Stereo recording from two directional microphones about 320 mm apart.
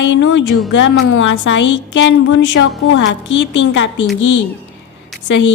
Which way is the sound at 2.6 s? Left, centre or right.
Left.